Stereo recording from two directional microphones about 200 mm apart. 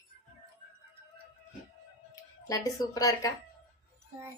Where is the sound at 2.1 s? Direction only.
20° left (ahead or behind).